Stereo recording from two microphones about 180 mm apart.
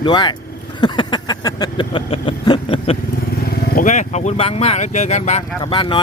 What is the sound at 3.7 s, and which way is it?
Speech, 45° left (ahead or behind).